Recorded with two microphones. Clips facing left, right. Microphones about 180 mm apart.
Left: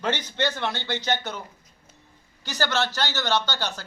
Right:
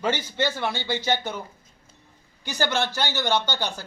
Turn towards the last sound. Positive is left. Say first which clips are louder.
# right 1 dB
turn(degrees=-15)  # may be behind; listen again after turning